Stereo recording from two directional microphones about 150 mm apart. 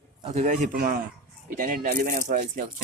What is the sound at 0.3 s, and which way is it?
Speech, 50° right (ahead or behind).